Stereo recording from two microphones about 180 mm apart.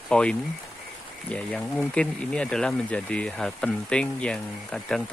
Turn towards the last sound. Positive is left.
turn(degrees=5)  # may be behind; listen again after turning